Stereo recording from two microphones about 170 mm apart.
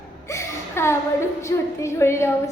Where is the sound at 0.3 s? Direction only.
15° left (ahead or behind).